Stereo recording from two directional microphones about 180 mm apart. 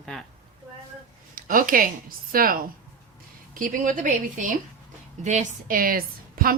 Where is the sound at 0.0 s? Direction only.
Centre (ahead or behind).